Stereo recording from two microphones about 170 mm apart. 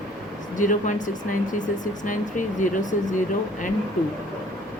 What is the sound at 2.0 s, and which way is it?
Speech, 50° left (ahead or behind).